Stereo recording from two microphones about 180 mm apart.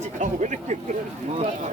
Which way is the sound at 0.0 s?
40° right (ahead or behind).